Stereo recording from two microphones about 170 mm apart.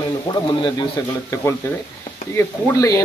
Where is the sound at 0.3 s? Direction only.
25° left (ahead or behind).